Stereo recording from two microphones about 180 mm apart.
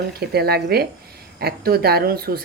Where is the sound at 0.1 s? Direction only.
60° right (ahead or behind).